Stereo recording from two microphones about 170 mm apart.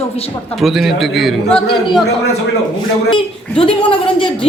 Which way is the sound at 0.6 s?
Centre (ahead or behind).